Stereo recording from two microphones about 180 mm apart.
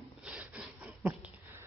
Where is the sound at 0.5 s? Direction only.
10° right (ahead or behind).